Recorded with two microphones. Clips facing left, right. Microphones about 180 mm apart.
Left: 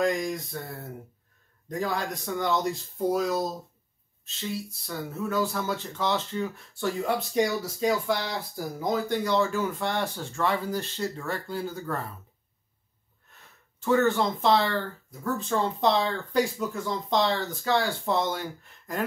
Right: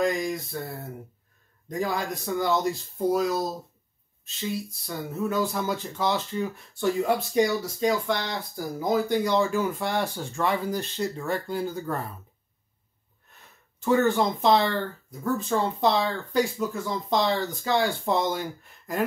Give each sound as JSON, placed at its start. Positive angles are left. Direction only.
{"t": 0.0, "sound": "speech", "side_deg": 0}
{"t": 1.7, "sound": "speech", "side_deg": -10}
{"t": 4.2, "sound": "speech", "side_deg": -15}
{"t": 7.3, "sound": "speech", "side_deg": 0}
{"t": 9.1, "sound": "speech", "side_deg": -15}
{"t": 13.7, "sound": "speech", "side_deg": -15}
{"t": 17.1, "sound": "speech", "side_deg": -10}